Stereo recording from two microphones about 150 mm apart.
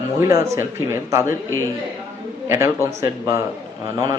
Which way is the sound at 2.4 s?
20° right (ahead or behind).